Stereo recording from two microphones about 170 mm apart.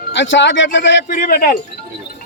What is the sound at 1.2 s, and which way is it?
Speech, 60° left (ahead or behind).